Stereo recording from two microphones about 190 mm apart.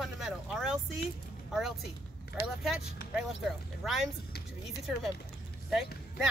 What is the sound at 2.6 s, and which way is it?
Speech, centre (ahead or behind).